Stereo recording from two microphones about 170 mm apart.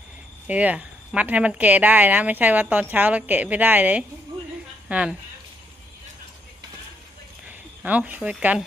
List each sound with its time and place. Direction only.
0.5 s a woman's voice: 10° right (ahead or behind)
7.4 s speech: 10° right (ahead or behind)